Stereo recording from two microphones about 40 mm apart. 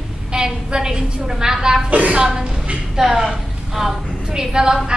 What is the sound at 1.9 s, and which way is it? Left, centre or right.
Speech, right.